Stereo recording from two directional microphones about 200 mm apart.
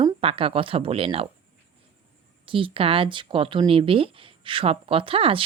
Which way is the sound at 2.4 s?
25° right (ahead or behind).